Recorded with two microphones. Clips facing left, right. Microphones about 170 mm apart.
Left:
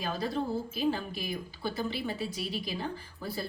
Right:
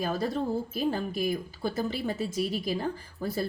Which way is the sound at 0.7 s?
45° right (ahead or behind).